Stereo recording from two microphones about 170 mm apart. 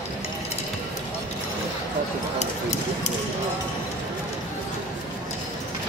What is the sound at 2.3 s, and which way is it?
Speech, 40° left (ahead or behind).